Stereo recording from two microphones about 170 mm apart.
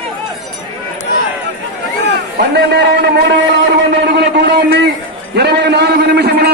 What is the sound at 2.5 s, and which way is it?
Speech, 80° right.